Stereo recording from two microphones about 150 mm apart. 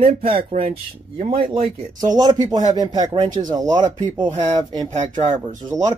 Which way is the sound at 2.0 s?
25° right (ahead or behind).